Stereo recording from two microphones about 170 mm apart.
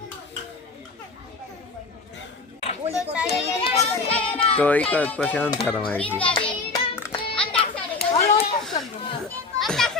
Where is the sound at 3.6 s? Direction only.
35° left (ahead or behind).